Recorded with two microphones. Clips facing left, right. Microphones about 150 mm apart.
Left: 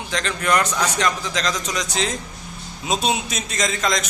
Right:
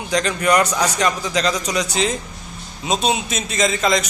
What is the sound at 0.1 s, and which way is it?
A man's voice, 10° right (ahead or behind).